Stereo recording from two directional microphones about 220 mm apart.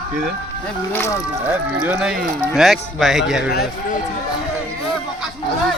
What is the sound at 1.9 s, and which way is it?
A man's voice, 5° right (ahead or behind).